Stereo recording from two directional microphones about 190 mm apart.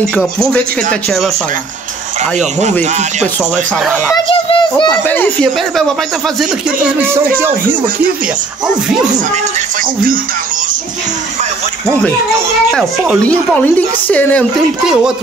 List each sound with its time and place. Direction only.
0.1 s speech: centre (ahead or behind)
4.1 s a child's voice: 25° left (ahead or behind)
4.9 s a woman's voice: 10° left (ahead or behind)
7.0 s speech: 10° right (ahead or behind)
13.2 s a woman's voice: 5° left (ahead or behind)